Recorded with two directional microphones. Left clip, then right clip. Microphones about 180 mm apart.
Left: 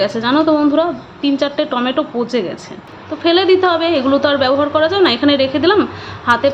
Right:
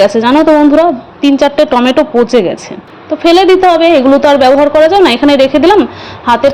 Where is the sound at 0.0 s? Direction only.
35° right (ahead or behind).